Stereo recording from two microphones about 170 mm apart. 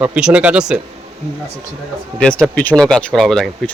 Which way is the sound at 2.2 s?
5° left (ahead or behind).